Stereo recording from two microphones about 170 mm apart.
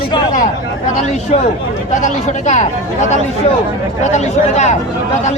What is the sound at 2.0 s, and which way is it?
Speech, 45° left (ahead or behind).